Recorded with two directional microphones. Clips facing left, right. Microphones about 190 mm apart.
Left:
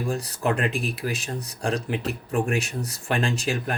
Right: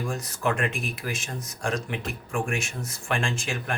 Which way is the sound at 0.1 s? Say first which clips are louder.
Left 4 dB; 35° left (ahead or behind).